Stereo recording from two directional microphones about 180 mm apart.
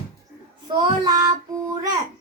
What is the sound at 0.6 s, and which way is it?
Speech, 25° right (ahead or behind).